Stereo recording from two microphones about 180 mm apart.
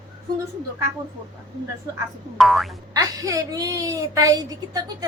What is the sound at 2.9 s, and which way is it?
A woman's voice, 20° right (ahead or behind).